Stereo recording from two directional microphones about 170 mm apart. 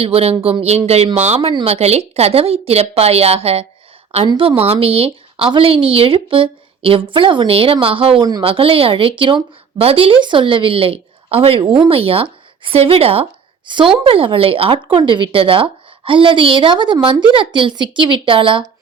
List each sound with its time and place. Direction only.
0.0 s speech: 35° right (ahead or behind)